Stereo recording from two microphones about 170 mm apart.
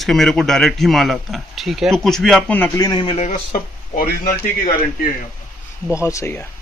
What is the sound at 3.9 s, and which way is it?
Speech, 60° left (ahead or behind).